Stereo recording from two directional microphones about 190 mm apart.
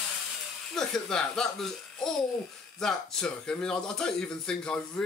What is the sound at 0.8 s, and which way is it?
Speech, 5° left (ahead or behind).